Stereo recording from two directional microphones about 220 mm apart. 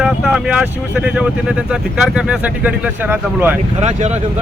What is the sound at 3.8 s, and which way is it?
Speech, 30° right (ahead or behind).